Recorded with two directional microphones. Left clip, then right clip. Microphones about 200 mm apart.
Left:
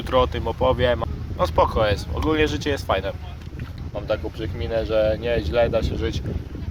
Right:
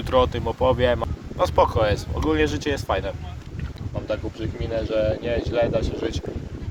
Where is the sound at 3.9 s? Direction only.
20° left (ahead or behind).